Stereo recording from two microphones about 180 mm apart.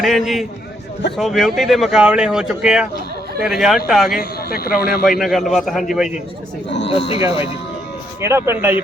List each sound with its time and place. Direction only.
0.0 s speech: centre (ahead or behind)
4.2 s speech: 55° left (ahead or behind)
5.2 s speech: centre (ahead or behind)
6.8 s speech: 30° left (ahead or behind)
8.2 s speech: 15° right (ahead or behind)